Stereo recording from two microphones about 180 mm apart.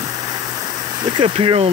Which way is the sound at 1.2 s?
30° right (ahead or behind).